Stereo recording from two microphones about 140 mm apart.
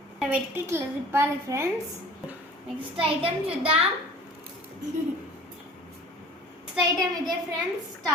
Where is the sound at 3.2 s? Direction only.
45° right (ahead or behind).